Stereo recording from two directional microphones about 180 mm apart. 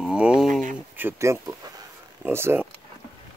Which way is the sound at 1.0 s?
15° right (ahead or behind).